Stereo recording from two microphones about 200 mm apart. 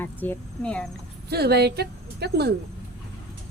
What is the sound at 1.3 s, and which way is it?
Speech, 55° right (ahead or behind).